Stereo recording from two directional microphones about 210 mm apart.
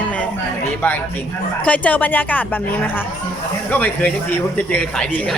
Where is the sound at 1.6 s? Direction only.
5° left (ahead or behind).